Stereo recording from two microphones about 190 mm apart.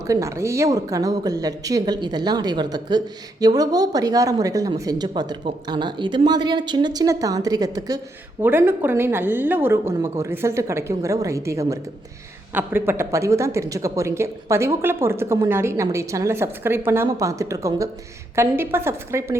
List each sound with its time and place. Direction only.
0.1 s a woman's voice: 15° right (ahead or behind)